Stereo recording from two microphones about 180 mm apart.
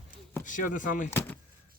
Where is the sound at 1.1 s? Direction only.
10° left (ahead or behind).